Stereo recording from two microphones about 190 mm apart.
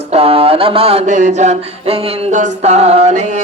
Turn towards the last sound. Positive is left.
turn(degrees=-35)  # may be behind; listen again after turning